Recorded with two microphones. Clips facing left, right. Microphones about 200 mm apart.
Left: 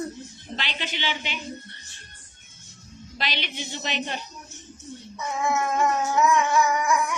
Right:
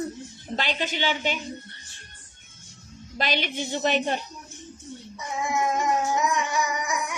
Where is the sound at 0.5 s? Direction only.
45° right (ahead or behind).